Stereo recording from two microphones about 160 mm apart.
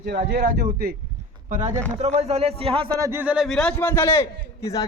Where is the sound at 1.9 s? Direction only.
40° right (ahead or behind).